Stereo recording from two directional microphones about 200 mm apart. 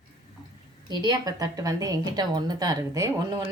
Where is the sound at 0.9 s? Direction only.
20° right (ahead or behind).